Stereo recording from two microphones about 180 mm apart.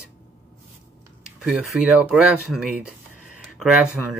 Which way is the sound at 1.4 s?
5° right (ahead or behind).